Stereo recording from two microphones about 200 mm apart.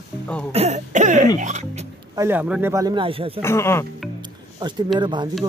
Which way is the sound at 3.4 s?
15° left (ahead or behind).